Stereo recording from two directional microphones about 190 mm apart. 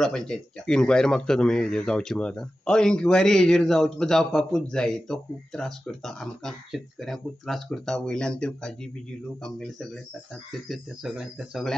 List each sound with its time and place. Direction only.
0.0 s speech: 5° left (ahead or behind)
10.7 s speech: 5° right (ahead or behind)